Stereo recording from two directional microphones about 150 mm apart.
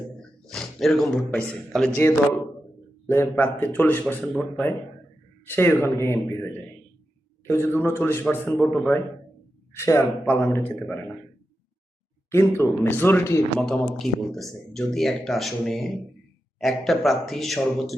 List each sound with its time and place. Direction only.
0.4 s a sound: 5° left (ahead or behind)
1.3 s a man's voice: 10° left (ahead or behind)
3.1 s a man's voice: 15° left (ahead or behind)
9.8 s a man's voice: 15° left (ahead or behind)
12.3 s a man's voice: 15° left (ahead or behind)
13.6 s speech: centre (ahead or behind)